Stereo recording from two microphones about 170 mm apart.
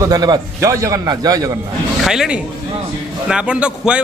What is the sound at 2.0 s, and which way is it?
A man's voice, 5° right (ahead or behind).